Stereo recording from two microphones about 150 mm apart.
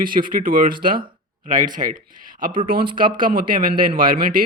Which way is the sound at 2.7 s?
75° right (ahead or behind).